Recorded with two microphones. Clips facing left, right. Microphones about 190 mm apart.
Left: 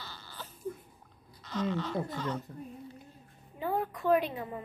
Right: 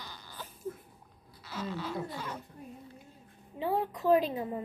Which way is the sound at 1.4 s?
10° right (ahead or behind).